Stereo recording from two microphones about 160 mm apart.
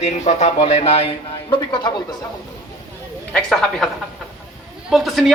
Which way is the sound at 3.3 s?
5° left (ahead or behind).